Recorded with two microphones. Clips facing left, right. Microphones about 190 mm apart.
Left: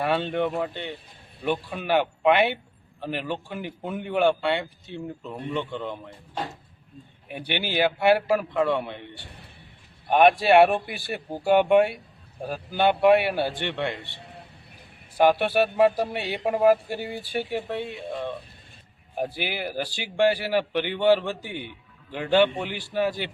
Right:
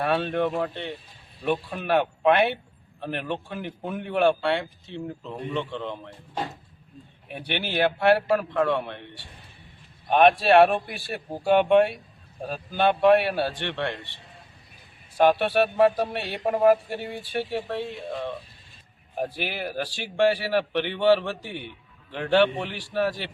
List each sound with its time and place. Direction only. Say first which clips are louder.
0.0 s a man's voice: even; centre (ahead or behind)
7.3 s a man's voice: left 1 dB; 10° left (ahead or behind)
10.1 s a man's voice: even; 10° left (ahead or behind)
14.2 s vehicle: left 6 dB; 65° left (ahead or behind)
15.2 s a man's voice: even; 10° left (ahead or behind)
22.1 s a man's voice: even; 10° left (ahead or behind)